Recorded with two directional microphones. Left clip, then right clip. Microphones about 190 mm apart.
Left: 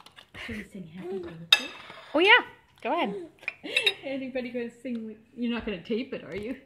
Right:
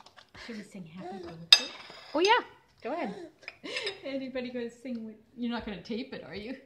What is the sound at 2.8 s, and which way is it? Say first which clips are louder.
Speech: left 7 dB; 15° left (ahead or behind).